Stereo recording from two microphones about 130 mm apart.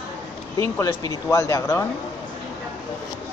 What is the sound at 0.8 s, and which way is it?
A man's voice, 25° left (ahead or behind).